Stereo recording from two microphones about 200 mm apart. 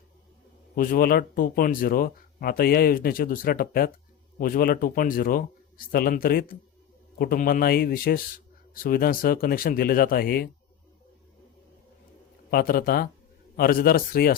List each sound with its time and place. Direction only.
0.8 s speech: 45° left (ahead or behind)
12.5 s speech: 45° left (ahead or behind)